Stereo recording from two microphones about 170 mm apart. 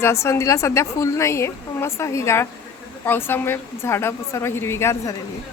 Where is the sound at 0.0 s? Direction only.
15° left (ahead or behind).